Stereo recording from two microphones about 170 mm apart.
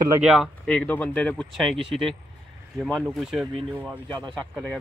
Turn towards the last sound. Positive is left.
turn(degrees=0)  # may be behind; listen again after turning